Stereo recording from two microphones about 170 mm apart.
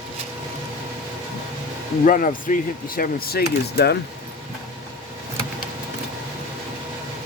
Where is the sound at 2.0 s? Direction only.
50° left (ahead or behind); by 4.0 s 70° left (ahead or behind).